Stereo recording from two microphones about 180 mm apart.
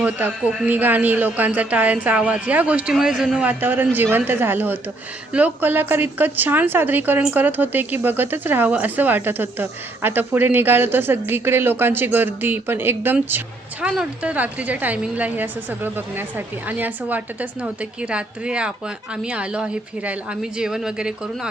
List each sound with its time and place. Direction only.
0.0 s a woman's voice: 10° right (ahead or behind)